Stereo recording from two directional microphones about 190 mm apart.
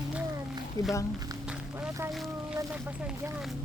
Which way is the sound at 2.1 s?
Centre (ahead or behind).